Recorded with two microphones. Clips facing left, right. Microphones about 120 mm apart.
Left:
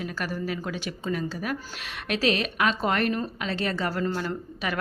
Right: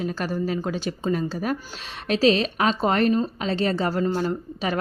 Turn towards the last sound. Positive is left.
turn(degrees=-30)  # may be behind; listen again after turning